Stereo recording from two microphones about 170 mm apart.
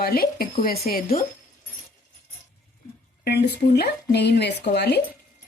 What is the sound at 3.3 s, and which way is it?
Speech, 75° left (ahead or behind).